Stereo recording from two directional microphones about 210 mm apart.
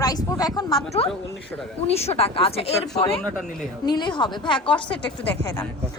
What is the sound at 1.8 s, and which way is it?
A woman's voice, 30° left (ahead or behind).